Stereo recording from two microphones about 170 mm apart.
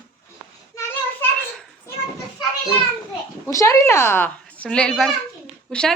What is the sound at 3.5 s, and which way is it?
A woman's voice, 20° left (ahead or behind).